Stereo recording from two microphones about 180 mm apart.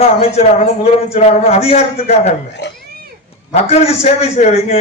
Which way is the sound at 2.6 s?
75° left (ahead or behind).